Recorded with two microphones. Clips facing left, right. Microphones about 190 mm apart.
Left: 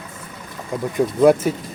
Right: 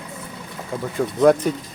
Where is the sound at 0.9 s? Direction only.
10° left (ahead or behind).